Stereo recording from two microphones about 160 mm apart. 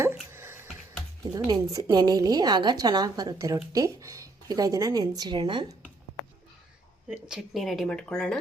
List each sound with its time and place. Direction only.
0.0 s a sound: 15° right (ahead or behind)
1.3 s a woman's voice: 25° right (ahead or behind)
7.1 s speech: 5° right (ahead or behind)